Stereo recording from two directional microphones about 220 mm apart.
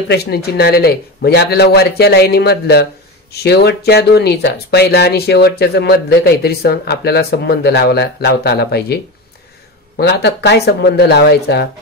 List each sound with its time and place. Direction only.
0.1 s speech: 45° left (ahead or behind)